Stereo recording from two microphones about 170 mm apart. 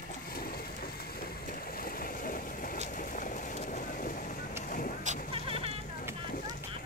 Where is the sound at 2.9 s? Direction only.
55° left (ahead or behind).